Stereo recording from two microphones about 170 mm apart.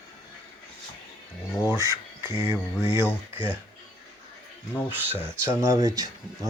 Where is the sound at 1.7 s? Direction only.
20° right (ahead or behind).